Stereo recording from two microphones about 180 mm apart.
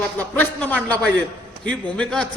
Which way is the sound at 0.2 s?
10° left (ahead or behind).